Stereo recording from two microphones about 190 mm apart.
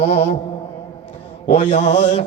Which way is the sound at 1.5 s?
30° left (ahead or behind).